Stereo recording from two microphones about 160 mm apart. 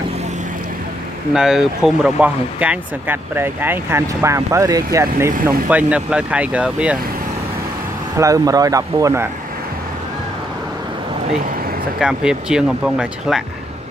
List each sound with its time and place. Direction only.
1.3 s speech: 5° right (ahead or behind); by 5.3 s 20° right (ahead or behind)
5.7 s speech: 10° right (ahead or behind)
8.2 s speech: 20° right (ahead or behind)
12.0 s speech: 5° right (ahead or behind)